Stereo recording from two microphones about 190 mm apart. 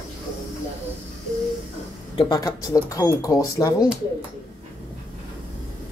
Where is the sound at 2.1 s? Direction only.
20° left (ahead or behind).